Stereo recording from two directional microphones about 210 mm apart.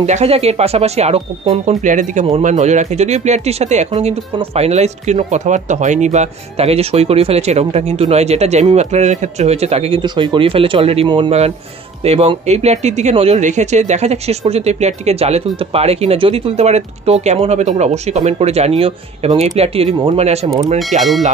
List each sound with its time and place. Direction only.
0.0 s speech: 30° right (ahead or behind)